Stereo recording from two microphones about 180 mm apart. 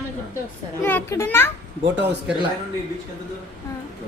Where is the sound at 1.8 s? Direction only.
85° right.